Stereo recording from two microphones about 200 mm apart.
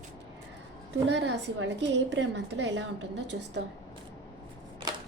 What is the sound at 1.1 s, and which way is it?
A woman's voice, 60° right (ahead or behind).